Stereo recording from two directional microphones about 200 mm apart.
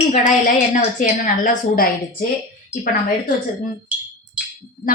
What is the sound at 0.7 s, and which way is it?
A woman's voice, 40° left (ahead or behind).